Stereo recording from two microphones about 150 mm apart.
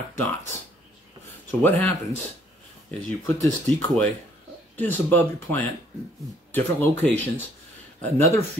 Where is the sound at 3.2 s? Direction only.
15° left (ahead or behind).